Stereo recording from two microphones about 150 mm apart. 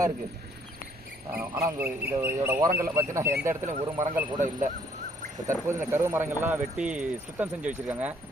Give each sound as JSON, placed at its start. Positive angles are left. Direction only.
{"t": 1.3, "sound": "speech", "side_deg": -15}
{"t": 4.4, "sound": "speech", "side_deg": -50}
{"t": 5.6, "sound": "speech", "side_deg": -15}